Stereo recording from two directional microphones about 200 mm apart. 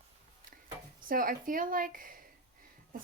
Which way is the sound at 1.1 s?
45° right (ahead or behind).